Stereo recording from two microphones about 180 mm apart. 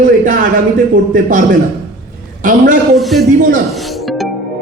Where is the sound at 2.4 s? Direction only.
50° right (ahead or behind).